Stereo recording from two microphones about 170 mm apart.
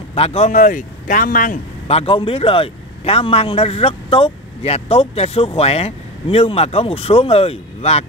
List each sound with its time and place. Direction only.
0.1 s speech: 35° left (ahead or behind); by 1.6 s 55° left (ahead or behind)
1.9 s speech: 35° left (ahead or behind)